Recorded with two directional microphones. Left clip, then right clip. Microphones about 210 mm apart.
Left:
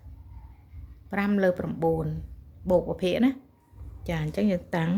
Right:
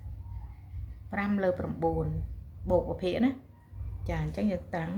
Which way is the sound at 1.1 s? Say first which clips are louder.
Left 4 dB; 50° left (ahead or behind).